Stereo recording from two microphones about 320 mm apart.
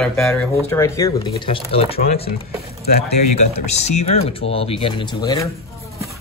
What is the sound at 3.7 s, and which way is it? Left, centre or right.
Speech, left.